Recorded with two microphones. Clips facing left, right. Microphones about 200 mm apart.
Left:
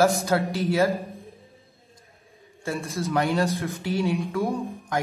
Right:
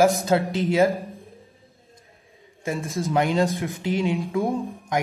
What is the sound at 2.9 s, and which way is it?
A man's voice, 15° right (ahead or behind).